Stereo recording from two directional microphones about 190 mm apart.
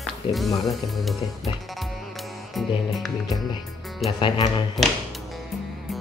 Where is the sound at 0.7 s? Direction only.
Centre (ahead or behind).